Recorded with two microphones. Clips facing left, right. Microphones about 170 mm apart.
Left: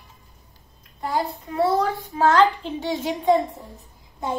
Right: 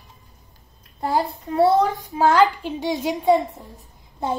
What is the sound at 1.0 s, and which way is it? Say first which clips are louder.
Speech: right 3 dB; 30° right (ahead or behind).